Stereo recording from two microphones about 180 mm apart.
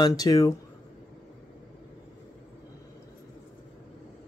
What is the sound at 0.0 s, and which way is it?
Speech, 20° left (ahead or behind).